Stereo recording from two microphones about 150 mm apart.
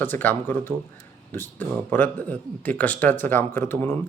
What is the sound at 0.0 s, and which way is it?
Speech, 10° left (ahead or behind).